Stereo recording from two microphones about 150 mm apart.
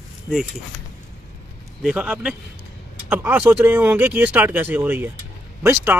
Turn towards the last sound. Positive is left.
turn(degrees=-15)  # may be behind; listen again after turning